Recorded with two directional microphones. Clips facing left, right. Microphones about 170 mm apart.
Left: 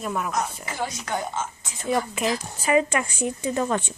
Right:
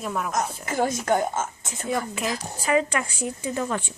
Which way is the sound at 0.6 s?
50° right (ahead or behind).